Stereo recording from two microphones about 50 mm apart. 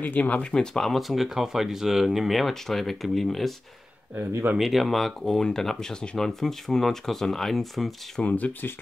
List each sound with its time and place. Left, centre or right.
0.0 s speech: left
0.4 s speech: centre
1.0 s speech: centre
4.6 s speech: centre
8.3 s speech: left